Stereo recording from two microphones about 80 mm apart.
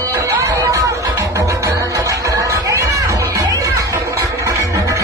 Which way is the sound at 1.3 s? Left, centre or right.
Right.